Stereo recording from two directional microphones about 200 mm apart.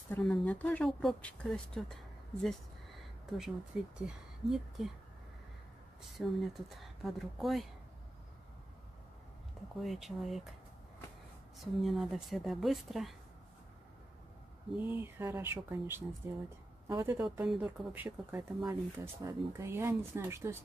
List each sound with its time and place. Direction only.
0.1 s speech: 5° left (ahead or behind)
6.1 s speech: centre (ahead or behind)
9.8 s speech: centre (ahead or behind)
11.5 s speech: centre (ahead or behind)
14.8 s speech: 10° right (ahead or behind)